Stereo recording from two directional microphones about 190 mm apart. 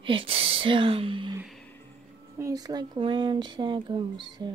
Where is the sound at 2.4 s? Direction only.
20° right (ahead or behind).